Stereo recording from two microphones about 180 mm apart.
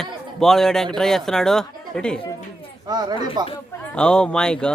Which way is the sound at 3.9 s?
5° left (ahead or behind).